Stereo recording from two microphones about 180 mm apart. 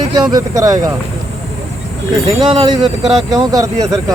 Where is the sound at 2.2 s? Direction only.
25° right (ahead or behind).